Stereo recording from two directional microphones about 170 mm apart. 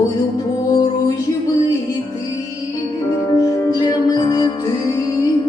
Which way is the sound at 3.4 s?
20° left (ahead or behind).